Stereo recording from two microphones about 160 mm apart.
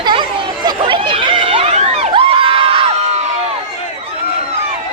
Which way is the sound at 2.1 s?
35° right (ahead or behind).